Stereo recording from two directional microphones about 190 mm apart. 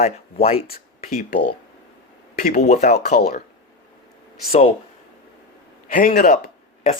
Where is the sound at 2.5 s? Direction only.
40° left (ahead or behind).